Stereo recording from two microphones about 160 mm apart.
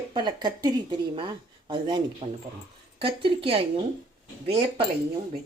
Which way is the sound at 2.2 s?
40° right (ahead or behind).